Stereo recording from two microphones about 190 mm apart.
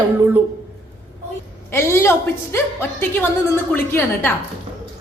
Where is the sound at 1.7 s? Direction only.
15° left (ahead or behind).